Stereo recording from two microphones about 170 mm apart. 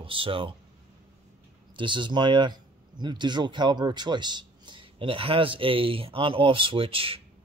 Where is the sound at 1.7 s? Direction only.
30° right (ahead or behind).